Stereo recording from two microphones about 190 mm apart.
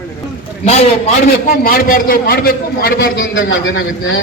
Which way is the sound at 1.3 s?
50° left (ahead or behind).